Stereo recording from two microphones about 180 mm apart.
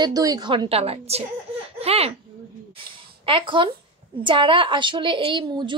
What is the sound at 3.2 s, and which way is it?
A woman's voice, 30° right (ahead or behind).